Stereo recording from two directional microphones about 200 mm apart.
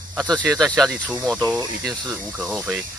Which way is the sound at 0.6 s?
Centre (ahead or behind).